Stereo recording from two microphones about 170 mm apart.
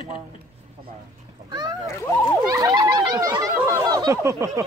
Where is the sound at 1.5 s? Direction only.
25° right (ahead or behind).